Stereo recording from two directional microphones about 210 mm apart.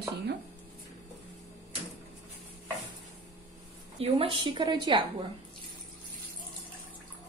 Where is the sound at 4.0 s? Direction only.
25° right (ahead or behind).